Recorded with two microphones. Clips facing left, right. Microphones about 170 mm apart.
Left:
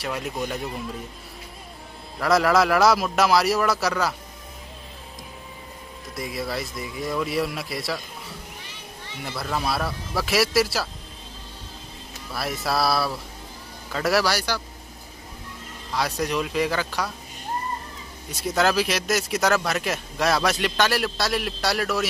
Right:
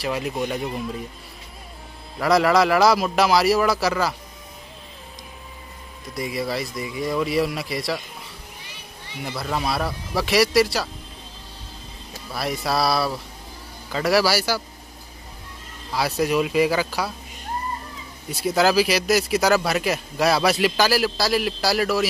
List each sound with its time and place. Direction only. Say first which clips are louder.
0.0 s speech: right 3 dB; centre (ahead or behind)
2.1 s speech: right 2 dB; centre (ahead or behind)
6.1 s speech: right 3 dB; centre (ahead or behind)
8.6 s children playing: left 1 dB; 15° right (ahead or behind)
9.4 s speech: right 1 dB; centre (ahead or behind)
12.3 s speech: right 2 dB; centre (ahead or behind)
15.9 s speech: right 4 dB; 5° right (ahead or behind)
18.3 s speech: right 3 dB; centre (ahead or behind)